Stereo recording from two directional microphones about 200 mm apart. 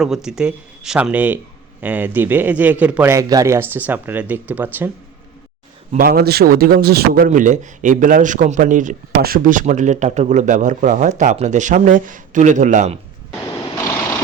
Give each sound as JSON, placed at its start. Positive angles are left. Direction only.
{"t": 0.0, "sound": "speech", "side_deg": -5}
{"t": 5.9, "sound": "speech", "side_deg": -45}